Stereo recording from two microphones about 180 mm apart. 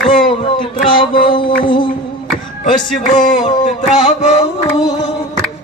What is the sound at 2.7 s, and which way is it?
Speech, 45° left (ahead or behind).